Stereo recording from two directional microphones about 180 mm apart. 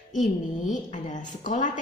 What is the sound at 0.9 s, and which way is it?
Speech, 45° left (ahead or behind).